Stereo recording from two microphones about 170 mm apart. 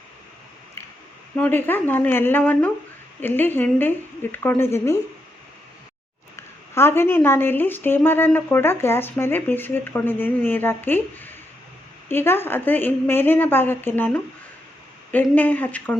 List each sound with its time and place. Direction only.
0.8 s a sound: 15° left (ahead or behind)
1.4 s a woman's voice: 10° left (ahead or behind)
6.3 s a woman's voice: 15° left (ahead or behind)